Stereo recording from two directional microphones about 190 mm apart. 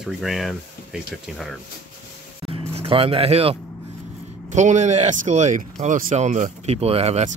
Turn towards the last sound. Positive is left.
turn(degrees=-35)  # may be behind; listen again after turning